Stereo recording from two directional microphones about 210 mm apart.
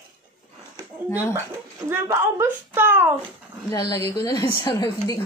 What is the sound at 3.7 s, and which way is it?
A woman's voice, 15° left (ahead or behind).